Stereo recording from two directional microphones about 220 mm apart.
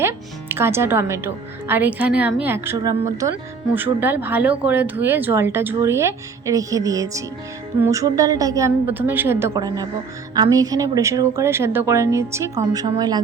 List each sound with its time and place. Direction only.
0.0 s a woman's voice: 10° right (ahead or behind)